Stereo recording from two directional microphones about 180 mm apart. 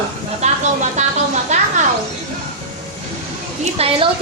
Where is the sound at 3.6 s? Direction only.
30° right (ahead or behind).